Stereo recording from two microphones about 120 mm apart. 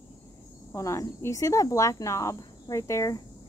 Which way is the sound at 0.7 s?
25° left (ahead or behind).